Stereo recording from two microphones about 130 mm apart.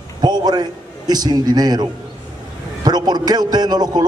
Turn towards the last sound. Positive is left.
turn(degrees=-30)  # may be behind; listen again after turning